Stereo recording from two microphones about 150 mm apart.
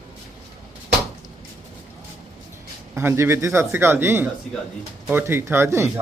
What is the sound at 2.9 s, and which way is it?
A man's voice, 15° right (ahead or behind).